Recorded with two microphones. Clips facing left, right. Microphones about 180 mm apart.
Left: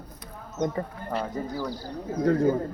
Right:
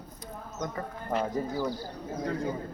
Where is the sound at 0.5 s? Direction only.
30° left (ahead or behind).